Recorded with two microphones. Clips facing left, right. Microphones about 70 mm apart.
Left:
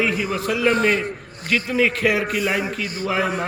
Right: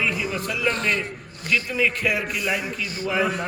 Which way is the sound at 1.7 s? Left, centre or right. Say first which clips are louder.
Left 6 dB; left.